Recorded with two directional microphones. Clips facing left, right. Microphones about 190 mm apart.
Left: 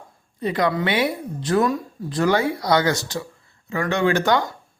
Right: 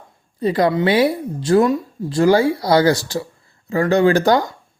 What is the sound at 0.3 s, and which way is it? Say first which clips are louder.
A woman's voice: right 5 dB; 35° right (ahead or behind).